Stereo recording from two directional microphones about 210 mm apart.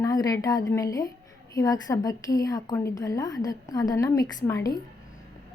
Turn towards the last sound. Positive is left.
turn(degrees=15)  # may be behind; listen again after turning